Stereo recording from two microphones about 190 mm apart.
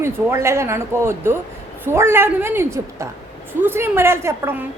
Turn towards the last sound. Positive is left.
turn(degrees=-15)  # may be behind; listen again after turning